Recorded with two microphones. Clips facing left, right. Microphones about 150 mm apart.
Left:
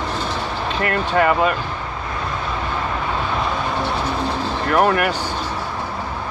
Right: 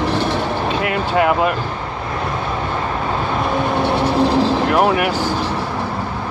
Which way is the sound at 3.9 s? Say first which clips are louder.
Right 7 dB; 85° right.